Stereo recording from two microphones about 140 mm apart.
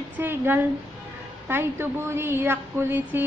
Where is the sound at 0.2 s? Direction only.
15° right (ahead or behind).